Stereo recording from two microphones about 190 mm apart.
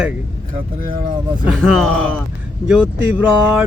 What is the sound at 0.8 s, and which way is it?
Speech, 45° right (ahead or behind).